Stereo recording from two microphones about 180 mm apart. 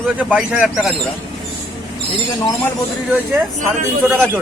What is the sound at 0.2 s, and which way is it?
Speech, 10° right (ahead or behind).